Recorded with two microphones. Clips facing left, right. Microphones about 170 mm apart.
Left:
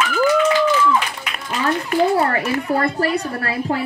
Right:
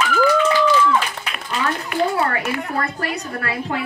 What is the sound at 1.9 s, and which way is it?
A woman's voice, 40° left (ahead or behind).